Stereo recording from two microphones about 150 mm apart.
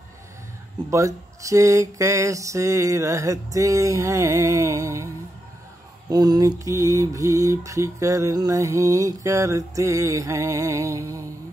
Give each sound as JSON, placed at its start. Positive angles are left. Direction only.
{"t": 0.8, "sound": "mantra", "side_deg": -20}